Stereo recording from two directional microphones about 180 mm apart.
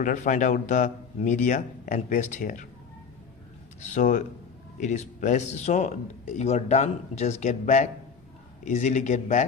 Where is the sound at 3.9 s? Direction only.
40° left (ahead or behind).